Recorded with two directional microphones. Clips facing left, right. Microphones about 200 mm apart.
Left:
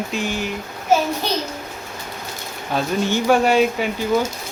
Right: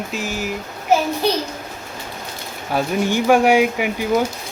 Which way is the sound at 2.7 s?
15° right (ahead or behind).